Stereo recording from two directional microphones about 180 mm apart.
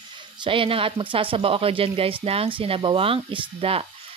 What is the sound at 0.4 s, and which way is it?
Speech, 30° right (ahead or behind).